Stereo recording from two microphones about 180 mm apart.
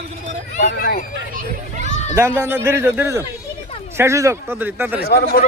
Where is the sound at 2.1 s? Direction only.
15° right (ahead or behind).